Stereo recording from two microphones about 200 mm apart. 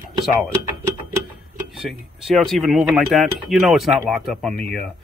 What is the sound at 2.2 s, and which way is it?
Speech, centre (ahead or behind).